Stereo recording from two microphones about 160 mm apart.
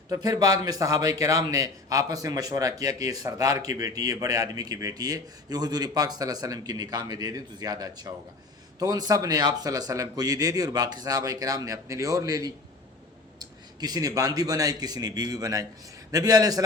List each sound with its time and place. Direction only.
0.1 s a man's voice: 25° right (ahead or behind)